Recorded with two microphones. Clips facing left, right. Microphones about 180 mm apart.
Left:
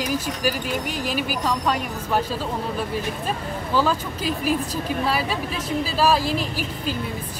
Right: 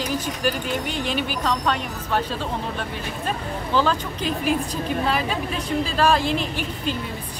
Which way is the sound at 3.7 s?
5° left (ahead or behind).